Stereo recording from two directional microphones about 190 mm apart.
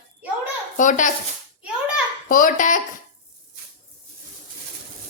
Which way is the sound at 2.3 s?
45° left (ahead or behind).